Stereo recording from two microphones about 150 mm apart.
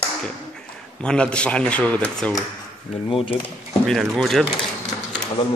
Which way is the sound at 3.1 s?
40° left (ahead or behind).